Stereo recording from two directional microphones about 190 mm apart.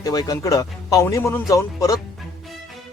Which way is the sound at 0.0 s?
20° left (ahead or behind).